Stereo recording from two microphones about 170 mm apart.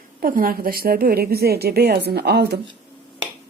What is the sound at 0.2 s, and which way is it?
A woman's voice, 55° right (ahead or behind).